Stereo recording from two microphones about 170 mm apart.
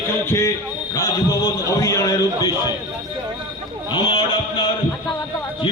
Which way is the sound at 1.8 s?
20° left (ahead or behind).